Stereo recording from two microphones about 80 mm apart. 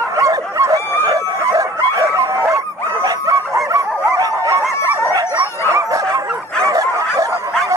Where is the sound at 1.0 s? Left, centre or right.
Right.